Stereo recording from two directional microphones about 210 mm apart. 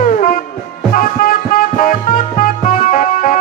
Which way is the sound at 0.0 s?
40° left (ahead or behind).